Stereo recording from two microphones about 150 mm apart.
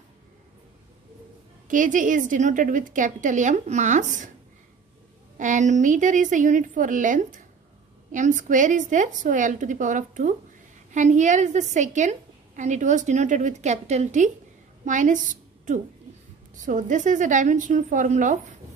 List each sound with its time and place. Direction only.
1.7 s a woman's voice: 60° right (ahead or behind)
5.4 s a woman's voice: 55° right (ahead or behind)